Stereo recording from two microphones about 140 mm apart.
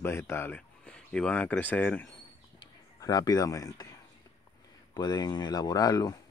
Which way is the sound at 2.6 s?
30° left (ahead or behind).